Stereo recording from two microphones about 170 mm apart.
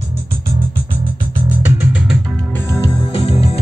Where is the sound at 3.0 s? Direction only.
35° left (ahead or behind).